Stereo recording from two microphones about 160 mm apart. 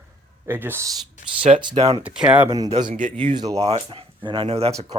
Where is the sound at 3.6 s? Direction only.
40° right (ahead or behind).